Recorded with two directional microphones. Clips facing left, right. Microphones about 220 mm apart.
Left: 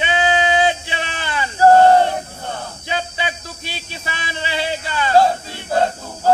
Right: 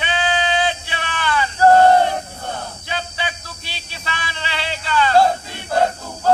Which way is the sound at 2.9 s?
20° left (ahead or behind).